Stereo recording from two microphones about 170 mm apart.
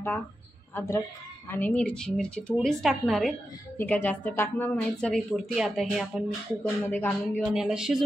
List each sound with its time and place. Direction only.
0.7 s a woman's voice: 15° left (ahead or behind); by 3.3 s centre (ahead or behind)
3.7 s speech: 10° left (ahead or behind)
6.8 s speech: 10° left (ahead or behind)
7.5 s a woman's voice: 5° right (ahead or behind)